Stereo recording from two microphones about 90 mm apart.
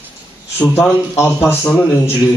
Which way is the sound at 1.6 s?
15° left (ahead or behind).